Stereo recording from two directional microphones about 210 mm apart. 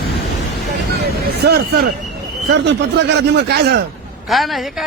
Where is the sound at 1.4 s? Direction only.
50° right (ahead or behind).